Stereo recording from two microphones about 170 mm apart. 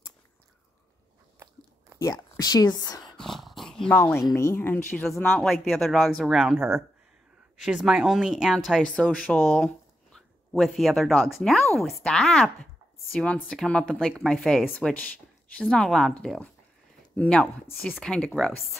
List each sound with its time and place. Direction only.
2.3 s a woman's voice: 25° left (ahead or behind)
3.2 s dog: centre (ahead or behind)
4.4 s speech: 15° left (ahead or behind)
5.4 s speech: centre (ahead or behind)